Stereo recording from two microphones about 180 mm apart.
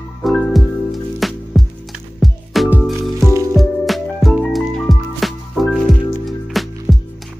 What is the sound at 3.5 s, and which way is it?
Music, centre (ahead or behind).